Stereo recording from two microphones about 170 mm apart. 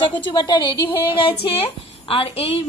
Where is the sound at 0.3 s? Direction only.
25° left (ahead or behind).